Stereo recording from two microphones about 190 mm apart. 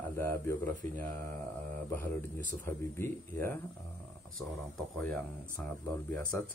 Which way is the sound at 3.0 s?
10° left (ahead or behind).